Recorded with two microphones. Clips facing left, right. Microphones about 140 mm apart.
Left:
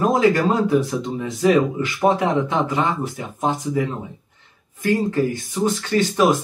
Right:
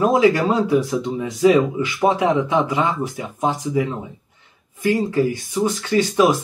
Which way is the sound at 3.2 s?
10° right (ahead or behind).